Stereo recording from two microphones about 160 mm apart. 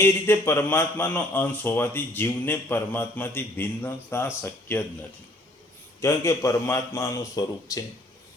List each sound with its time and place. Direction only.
0.0 s speech: 15° left (ahead or behind)
6.0 s a man's voice: 20° left (ahead or behind)